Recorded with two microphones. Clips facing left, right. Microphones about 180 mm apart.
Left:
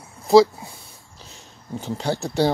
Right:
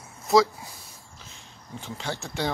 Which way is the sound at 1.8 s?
40° left (ahead or behind).